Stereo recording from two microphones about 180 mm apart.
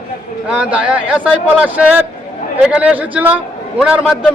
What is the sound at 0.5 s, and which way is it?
A man's voice, 5° right (ahead or behind).